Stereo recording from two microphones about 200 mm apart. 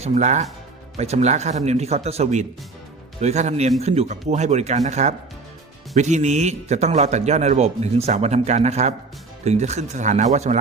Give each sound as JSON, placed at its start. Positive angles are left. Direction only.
{"t": 0.0, "sound": "a man's voice", "side_deg": -35}